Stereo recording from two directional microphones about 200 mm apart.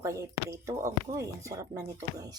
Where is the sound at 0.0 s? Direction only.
15° right (ahead or behind).